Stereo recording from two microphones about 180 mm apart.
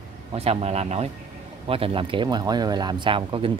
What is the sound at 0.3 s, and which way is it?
Speech, 35° right (ahead or behind).